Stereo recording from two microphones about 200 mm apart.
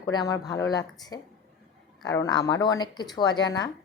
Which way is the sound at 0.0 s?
20° left (ahead or behind).